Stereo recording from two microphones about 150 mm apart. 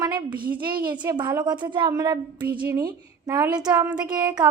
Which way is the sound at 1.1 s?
30° right (ahead or behind).